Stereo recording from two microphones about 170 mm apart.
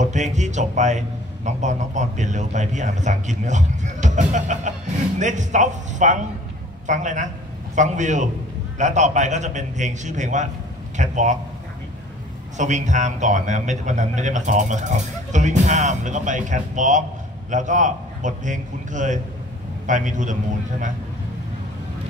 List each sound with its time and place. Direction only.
0.0 s a man's voice: 45° right (ahead or behind)
12.5 s a man's voice: 45° right (ahead or behind)